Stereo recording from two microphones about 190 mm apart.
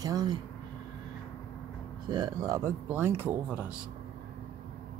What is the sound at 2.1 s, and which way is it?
Speech, 20° right (ahead or behind).